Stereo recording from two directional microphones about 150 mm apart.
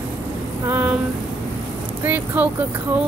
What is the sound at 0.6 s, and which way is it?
Speech, 15° right (ahead or behind).